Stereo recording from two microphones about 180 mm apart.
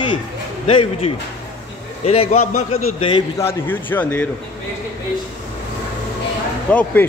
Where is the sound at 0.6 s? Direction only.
30° left (ahead or behind).